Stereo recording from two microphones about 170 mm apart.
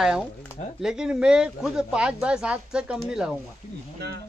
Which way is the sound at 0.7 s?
5° right (ahead or behind).